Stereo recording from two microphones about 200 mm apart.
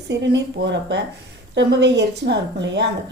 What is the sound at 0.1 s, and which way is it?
A woman's voice, 60° right (ahead or behind).